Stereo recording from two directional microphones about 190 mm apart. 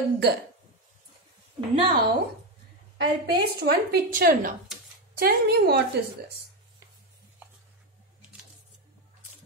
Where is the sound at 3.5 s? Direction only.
50° right (ahead or behind).